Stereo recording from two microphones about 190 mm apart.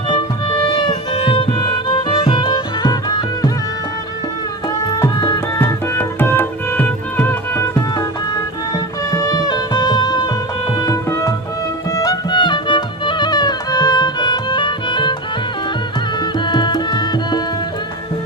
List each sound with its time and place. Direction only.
0.9 s music: 30° left (ahead or behind)
4.9 s music: 20° left (ahead or behind)
5.5 s music: 10° left (ahead or behind)
9.1 s music: 20° left (ahead or behind)
16.5 s music: 25° left (ahead or behind)